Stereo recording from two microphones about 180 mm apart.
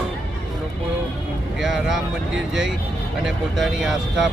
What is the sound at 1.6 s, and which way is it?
Speech, 5° right (ahead or behind).